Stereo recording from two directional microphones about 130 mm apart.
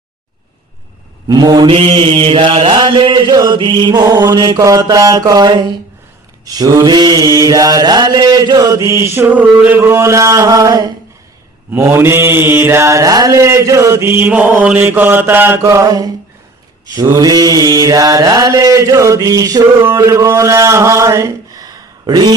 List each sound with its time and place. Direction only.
1.3 s mantra: 30° right (ahead or behind)
1.7 s mantra: 45° right (ahead or behind); by 10.9 s 30° right (ahead or behind)
11.7 s mantra: 20° right (ahead or behind)